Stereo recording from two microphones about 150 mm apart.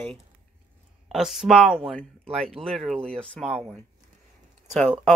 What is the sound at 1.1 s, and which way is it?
Speech, 5° right (ahead or behind).